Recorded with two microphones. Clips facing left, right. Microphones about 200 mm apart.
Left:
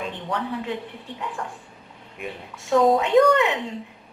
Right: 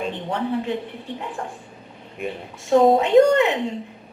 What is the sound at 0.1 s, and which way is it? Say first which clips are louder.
A woman's voice: right 4 dB; 25° right (ahead or behind).